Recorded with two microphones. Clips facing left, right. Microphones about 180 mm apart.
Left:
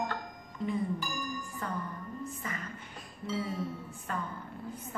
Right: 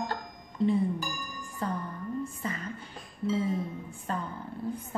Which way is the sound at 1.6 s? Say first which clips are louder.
Right 7 dB; 30° right (ahead or behind).